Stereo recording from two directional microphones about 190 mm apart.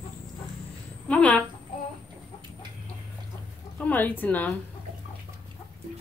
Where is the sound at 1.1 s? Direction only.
5° left (ahead or behind).